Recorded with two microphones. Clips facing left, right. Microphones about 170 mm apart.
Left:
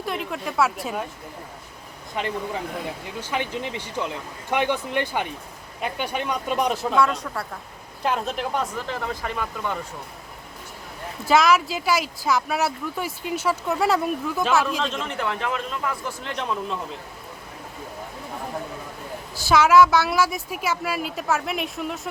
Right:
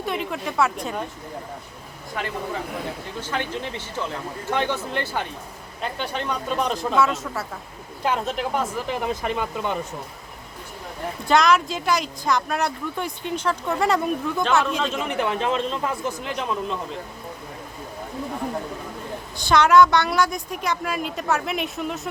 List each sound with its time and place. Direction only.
0.0 s speech: centre (ahead or behind)
2.2 s speech: 20° left (ahead or behind)
6.9 s speech: 5° right (ahead or behind)
8.9 s speech: 20° right (ahead or behind)
11.3 s speech: 5° left (ahead or behind)
15.0 s speech: 15° right (ahead or behind)
16.2 s speech: 5° right (ahead or behind)
19.4 s speech: 5° left (ahead or behind)